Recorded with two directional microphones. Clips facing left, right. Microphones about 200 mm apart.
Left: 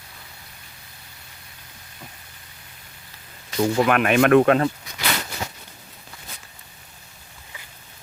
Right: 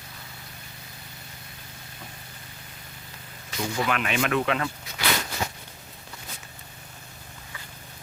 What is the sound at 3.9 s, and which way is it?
Speech, 55° left (ahead or behind).